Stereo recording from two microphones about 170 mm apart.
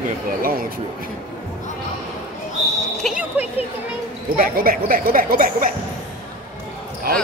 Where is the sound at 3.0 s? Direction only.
5° right (ahead or behind).